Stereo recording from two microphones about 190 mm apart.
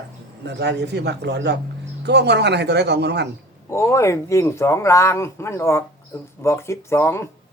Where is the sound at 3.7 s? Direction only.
15° left (ahead or behind).